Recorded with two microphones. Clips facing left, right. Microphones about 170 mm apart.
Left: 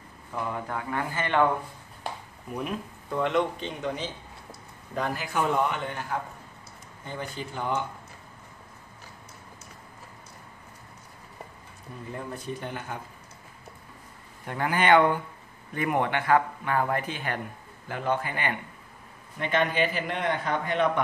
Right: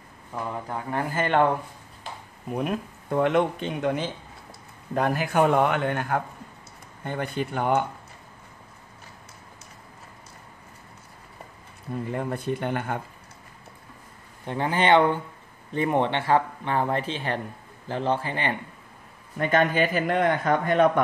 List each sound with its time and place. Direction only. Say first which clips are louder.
0.7 s speech: right 4 dB; 30° right (ahead or behind)
1.1 s a man's voice: right 4 dB; 45° right (ahead or behind)
2.5 s a man's voice: right 5 dB; 50° right (ahead or behind)
12.1 s a man's voice: right 6 dB; 65° right (ahead or behind)
14.4 s speech: right 2 dB; 25° right (ahead or behind)
19.3 s a man's voice: right 4 dB; 45° right (ahead or behind)